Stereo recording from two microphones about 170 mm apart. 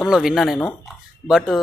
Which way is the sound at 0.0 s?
5° right (ahead or behind).